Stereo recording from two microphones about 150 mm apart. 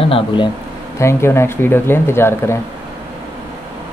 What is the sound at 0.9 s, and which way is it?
Speech, 20° left (ahead or behind).